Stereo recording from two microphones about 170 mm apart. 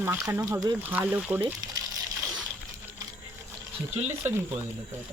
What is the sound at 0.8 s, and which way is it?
Speech, 10° right (ahead or behind).